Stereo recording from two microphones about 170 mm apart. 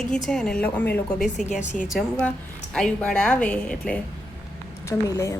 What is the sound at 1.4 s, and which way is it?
Speech, 50° left (ahead or behind).